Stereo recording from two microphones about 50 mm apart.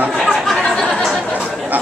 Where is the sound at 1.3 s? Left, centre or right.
Right.